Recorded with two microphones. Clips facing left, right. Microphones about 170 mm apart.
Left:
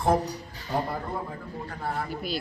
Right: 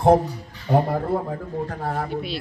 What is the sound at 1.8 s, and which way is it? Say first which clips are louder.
Speech: right 1 dB; 50° right (ahead or behind).